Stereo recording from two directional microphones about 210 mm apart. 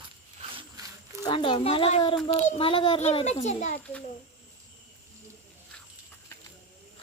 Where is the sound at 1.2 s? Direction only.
25° left (ahead or behind).